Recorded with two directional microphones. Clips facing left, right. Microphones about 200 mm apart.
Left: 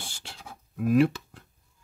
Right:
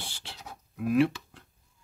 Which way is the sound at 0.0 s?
45° left (ahead or behind).